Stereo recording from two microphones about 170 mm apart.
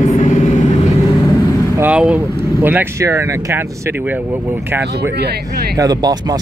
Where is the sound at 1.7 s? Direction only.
5° right (ahead or behind).